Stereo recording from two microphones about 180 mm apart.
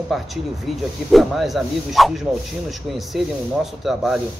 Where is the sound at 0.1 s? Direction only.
Centre (ahead or behind).